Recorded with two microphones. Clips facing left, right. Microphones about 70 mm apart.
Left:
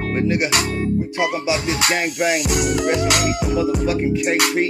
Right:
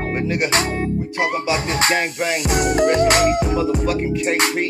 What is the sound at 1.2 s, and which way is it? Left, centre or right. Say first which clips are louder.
Music: right 3 dB; right.